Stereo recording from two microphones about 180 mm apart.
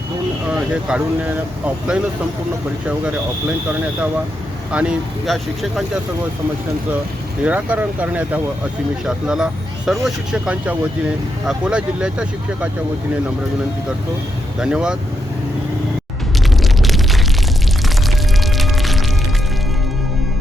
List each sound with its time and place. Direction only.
0.5 s speech: 5° right (ahead or behind)
4.7 s speech: 5° right (ahead or behind)
7.4 s speech: 10° right (ahead or behind)
14.6 s speech: 5° right (ahead or behind)
16.6 s explosion: centre (ahead or behind)
18.5 s music: centre (ahead or behind)